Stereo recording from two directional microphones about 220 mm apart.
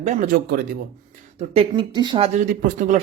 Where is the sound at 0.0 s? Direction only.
35° right (ahead or behind).